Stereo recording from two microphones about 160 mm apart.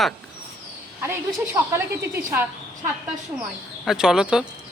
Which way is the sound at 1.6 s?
25° right (ahead or behind).